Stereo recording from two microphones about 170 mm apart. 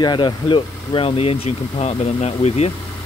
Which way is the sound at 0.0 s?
25° left (ahead or behind).